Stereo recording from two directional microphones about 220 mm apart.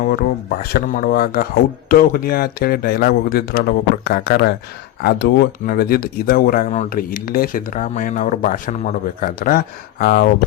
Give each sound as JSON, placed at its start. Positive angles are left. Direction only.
{"t": 0.0, "sound": "speech", "side_deg": 40}